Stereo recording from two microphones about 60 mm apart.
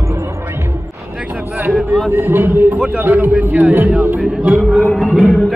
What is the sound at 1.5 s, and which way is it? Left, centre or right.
Speech, right.